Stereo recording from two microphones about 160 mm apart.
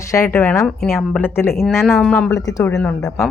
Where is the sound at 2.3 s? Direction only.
20° left (ahead or behind).